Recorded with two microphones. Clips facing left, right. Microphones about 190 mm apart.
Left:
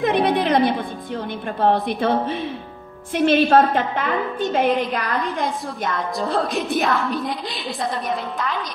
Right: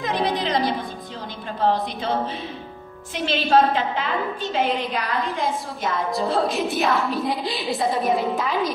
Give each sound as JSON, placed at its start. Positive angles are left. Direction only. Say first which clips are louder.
{"t": 0.0, "sound": "music", "louder": "left 5 dB", "side_deg": 55}
{"t": 1.6, "sound": "a woman's voice", "louder": "left 3 dB", "side_deg": 60}
{"t": 5.2, "sound": "a woman's voice", "louder": "left 1 dB", "side_deg": 0}